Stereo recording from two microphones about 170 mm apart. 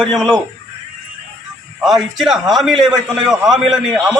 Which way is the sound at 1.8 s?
Centre (ahead or behind).